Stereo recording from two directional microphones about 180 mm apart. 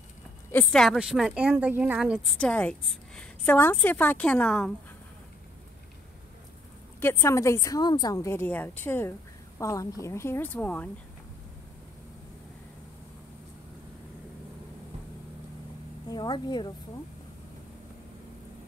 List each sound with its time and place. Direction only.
0.5 s speech: 5° left (ahead or behind)
2.4 s a woman's voice: 5° left (ahead or behind)
7.0 s a woman's voice: 15° left (ahead or behind)
16.1 s a woman's voice: 25° left (ahead or behind)